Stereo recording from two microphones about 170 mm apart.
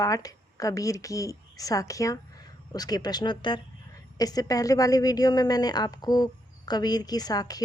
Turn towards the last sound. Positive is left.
turn(degrees=20)  # may be behind; listen again after turning